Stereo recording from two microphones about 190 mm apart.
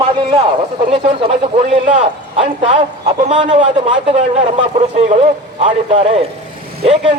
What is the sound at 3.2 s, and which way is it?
Speech, 35° right (ahead or behind).